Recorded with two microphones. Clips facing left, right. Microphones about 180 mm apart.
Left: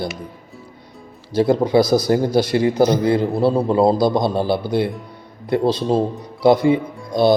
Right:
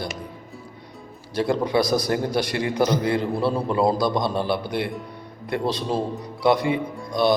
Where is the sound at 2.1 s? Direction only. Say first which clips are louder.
Left 7 dB; 25° left (ahead or behind).